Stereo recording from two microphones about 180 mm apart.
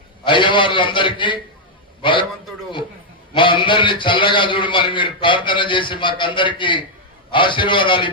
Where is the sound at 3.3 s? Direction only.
25° left (ahead or behind).